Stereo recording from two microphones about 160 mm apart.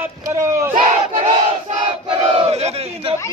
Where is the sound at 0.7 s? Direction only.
50° right (ahead or behind).